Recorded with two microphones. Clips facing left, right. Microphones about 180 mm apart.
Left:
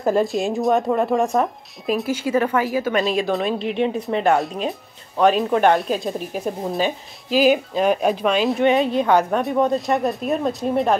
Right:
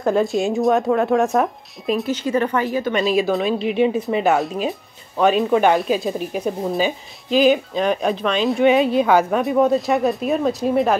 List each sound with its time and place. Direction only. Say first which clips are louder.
0.0 s speech: right 1 dB; centre (ahead or behind)